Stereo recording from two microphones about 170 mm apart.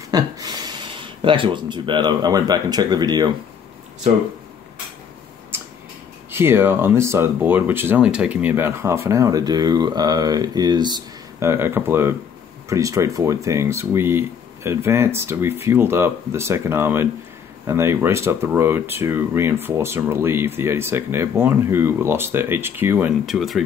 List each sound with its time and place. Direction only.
0.1 s speech: 25° right (ahead or behind)
6.3 s speech: 15° right (ahead or behind)